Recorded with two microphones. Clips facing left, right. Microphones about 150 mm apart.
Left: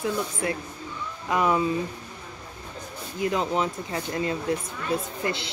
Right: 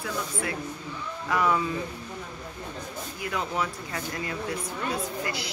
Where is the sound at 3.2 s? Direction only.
25° left (ahead or behind).